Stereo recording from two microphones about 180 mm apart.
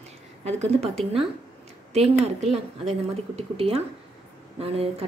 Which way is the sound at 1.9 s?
35° right (ahead or behind).